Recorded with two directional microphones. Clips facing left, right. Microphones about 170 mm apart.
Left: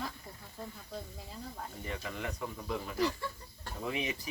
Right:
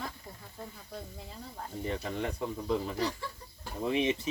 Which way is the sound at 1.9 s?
30° right (ahead or behind).